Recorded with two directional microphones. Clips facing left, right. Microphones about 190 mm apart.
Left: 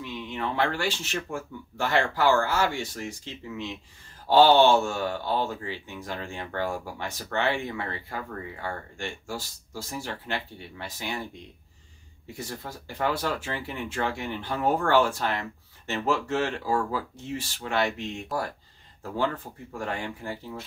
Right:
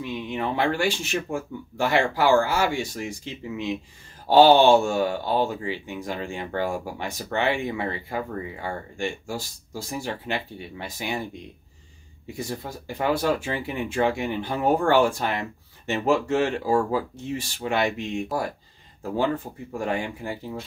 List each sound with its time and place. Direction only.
0.0 s speech: 15° right (ahead or behind)
12.4 s speech: 15° right (ahead or behind)
19.8 s speech: 15° right (ahead or behind)